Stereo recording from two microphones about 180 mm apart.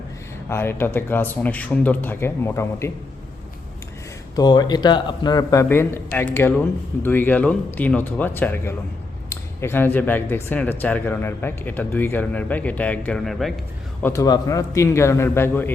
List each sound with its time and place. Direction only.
0.5 s speech: 10° left (ahead or behind)
4.4 s speech: 20° left (ahead or behind); by 13.5 s 5° left (ahead or behind)
14.0 s speech: 15° left (ahead or behind)